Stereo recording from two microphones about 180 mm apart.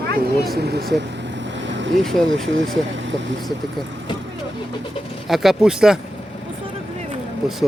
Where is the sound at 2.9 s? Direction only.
90° right.